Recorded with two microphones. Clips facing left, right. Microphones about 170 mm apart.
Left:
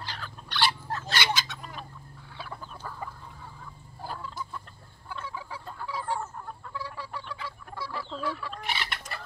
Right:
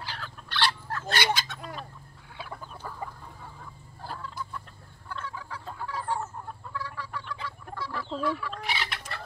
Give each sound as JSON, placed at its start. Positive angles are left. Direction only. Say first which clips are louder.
{"t": 0.0, "sound": "fowl", "louder": "even", "side_deg": -5}
{"t": 1.0, "sound": "fowl", "louder": "right 3 dB", "side_deg": -55}
{"t": 2.3, "sound": "chicken", "louder": "right 1 dB", "side_deg": -15}
{"t": 4.0, "sound": "chicken", "louder": "left 1 dB", "side_deg": 0}
{"t": 5.1, "sound": "fowl", "louder": "even", "side_deg": 10}
{"t": 6.7, "sound": "chicken", "louder": "right 1 dB", "side_deg": 10}
{"t": 7.4, "sound": "fowl", "louder": "right 1 dB", "side_deg": 10}
{"t": 8.2, "sound": "chicken", "louder": "right 5 dB", "side_deg": 10}